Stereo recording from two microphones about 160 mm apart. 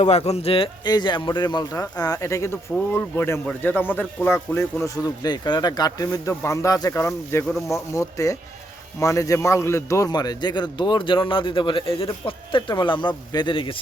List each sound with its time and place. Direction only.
0.0 s a man's voice: 45° left (ahead or behind)